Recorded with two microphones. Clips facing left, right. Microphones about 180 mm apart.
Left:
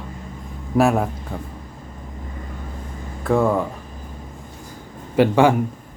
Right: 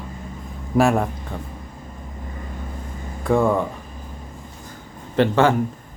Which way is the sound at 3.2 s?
Centre (ahead or behind).